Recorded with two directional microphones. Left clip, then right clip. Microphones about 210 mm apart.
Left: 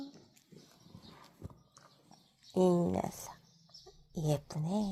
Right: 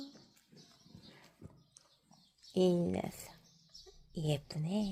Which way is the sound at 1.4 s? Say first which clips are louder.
Left 6 dB; 25° left (ahead or behind).